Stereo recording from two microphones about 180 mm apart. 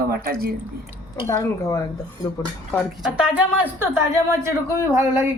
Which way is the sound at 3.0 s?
5° right (ahead or behind).